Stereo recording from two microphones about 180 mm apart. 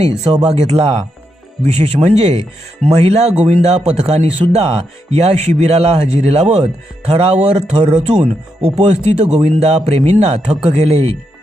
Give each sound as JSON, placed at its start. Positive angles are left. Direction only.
{"t": 0.5, "sound": "a man's voice", "side_deg": -35}